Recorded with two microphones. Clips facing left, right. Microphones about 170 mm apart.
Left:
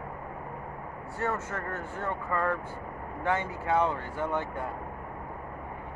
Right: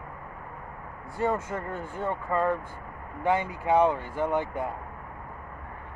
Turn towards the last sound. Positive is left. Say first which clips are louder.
# right 4 dB
turn(degrees=-15)  # may be behind; listen again after turning